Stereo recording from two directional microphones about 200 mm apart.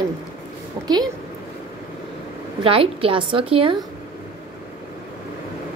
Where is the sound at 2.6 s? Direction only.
30° right (ahead or behind).